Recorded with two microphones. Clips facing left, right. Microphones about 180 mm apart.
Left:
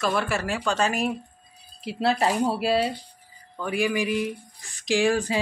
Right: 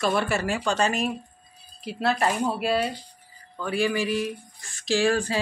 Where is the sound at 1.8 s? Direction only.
25° left (ahead or behind).